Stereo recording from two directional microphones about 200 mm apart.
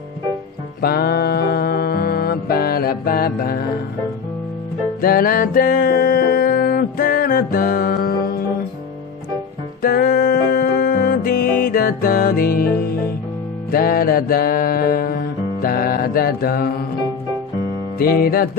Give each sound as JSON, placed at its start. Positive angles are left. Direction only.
{"t": 0.7, "sound": "music", "side_deg": 50}
{"t": 5.0, "sound": "music", "side_deg": 45}
{"t": 9.8, "sound": "music", "side_deg": 45}
{"t": 17.9, "sound": "music", "side_deg": 50}